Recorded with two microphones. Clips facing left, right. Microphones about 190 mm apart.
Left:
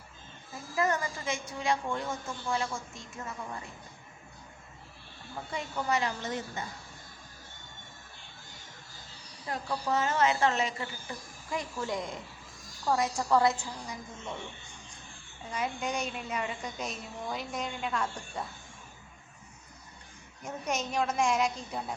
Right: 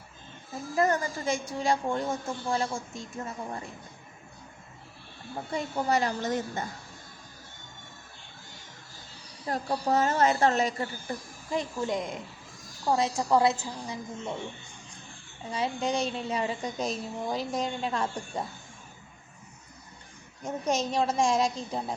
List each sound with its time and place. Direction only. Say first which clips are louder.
0.8 s a woman's voice: right 4 dB; 35° right (ahead or behind)
5.5 s a woman's voice: right 4 dB; 35° right (ahead or behind)
9.5 s a woman's voice: right 4 dB; 40° right (ahead or behind)
11.5 s a woman's voice: right 4 dB; 20° right (ahead or behind)
15.4 s a woman's voice: right 4 dB; 30° right (ahead or behind)
20.4 s a woman's voice: right 5 dB; 30° right (ahead or behind)